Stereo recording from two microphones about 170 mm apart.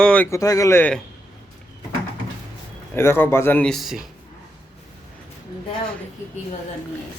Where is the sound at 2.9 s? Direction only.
15° left (ahead or behind).